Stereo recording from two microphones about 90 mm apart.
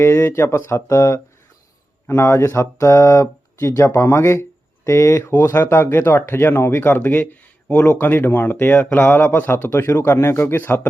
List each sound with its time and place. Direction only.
0.0 s speech: 30° left (ahead or behind)